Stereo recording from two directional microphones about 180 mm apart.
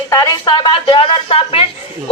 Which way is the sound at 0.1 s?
20° left (ahead or behind).